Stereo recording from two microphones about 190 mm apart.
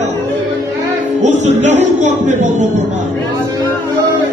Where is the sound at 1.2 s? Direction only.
40° right (ahead or behind).